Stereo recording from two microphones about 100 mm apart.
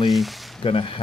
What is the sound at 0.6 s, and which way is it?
Speech, 65° left (ahead or behind).